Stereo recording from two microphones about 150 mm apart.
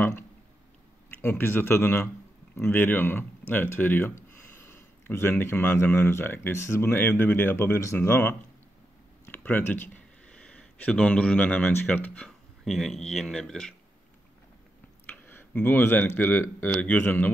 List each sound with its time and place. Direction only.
1.4 s a man's voice: 15° left (ahead or behind)
15.0 s a sound: 10° left (ahead or behind)
16.2 s speech: 15° left (ahead or behind)